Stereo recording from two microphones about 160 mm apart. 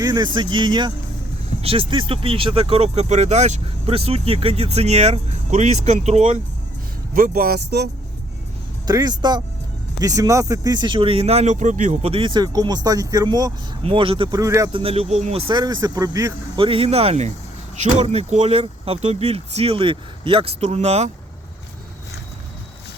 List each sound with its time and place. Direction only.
0.0 s speech: 25° right (ahead or behind); by 6.4 s 45° right (ahead or behind)
7.1 s speech: 65° right (ahead or behind); by 7.9 s 80° right
8.9 s speech: 25° right (ahead or behind); by 12.1 s 50° right (ahead or behind)
12.1 s speech: 30° right (ahead or behind)
13.8 s speech: 35° right (ahead or behind)
14.7 s speech: 35° right (ahead or behind)
16.6 s speech: 35° right (ahead or behind)